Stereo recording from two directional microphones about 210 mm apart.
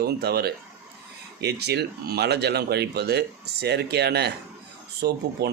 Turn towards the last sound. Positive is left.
turn(degrees=-50)  # may be behind; listen again after turning